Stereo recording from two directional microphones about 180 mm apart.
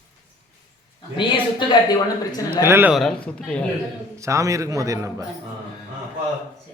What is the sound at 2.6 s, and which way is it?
Speech, 10° right (ahead or behind).